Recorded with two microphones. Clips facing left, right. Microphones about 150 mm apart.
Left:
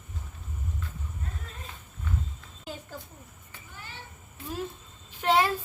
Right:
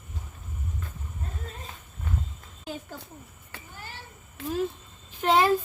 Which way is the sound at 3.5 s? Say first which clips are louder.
Right 6 dB; 75° right (ahead or behind).